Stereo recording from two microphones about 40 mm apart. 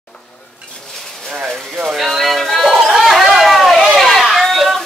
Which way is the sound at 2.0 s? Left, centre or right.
Centre.